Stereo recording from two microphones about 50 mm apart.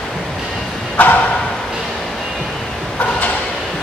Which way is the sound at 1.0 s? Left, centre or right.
Left.